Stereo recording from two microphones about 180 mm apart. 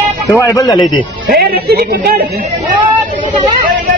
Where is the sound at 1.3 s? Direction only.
60° right (ahead or behind).